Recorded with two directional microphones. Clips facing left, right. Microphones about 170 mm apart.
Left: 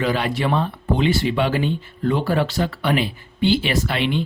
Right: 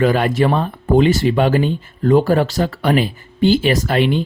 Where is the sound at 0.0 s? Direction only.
50° right (ahead or behind).